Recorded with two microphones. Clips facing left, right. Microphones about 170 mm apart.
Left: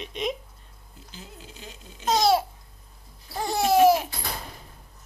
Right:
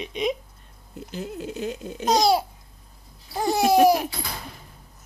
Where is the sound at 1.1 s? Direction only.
60° right (ahead or behind).